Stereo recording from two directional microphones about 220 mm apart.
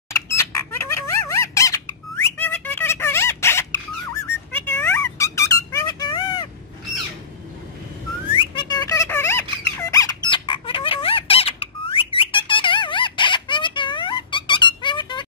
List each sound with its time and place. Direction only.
0.1 s bird: 10° left (ahead or behind)
2.3 s music: 10° left (ahead or behind)
8.4 s squeak: 20° left (ahead or behind)